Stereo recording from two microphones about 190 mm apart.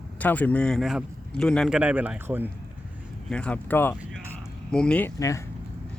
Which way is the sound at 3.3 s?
5° left (ahead or behind).